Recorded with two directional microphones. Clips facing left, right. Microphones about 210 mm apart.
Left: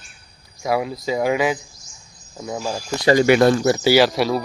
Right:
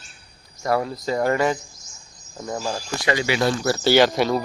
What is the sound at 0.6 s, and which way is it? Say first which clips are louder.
Speech: left 1 dB; 10° left (ahead or behind).